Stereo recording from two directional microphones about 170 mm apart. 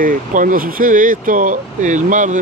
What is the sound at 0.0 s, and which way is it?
Speech, 50° right (ahead or behind).